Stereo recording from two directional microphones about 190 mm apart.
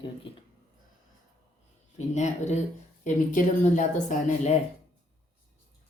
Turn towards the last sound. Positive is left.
turn(degrees=40)  # may be behind; listen again after turning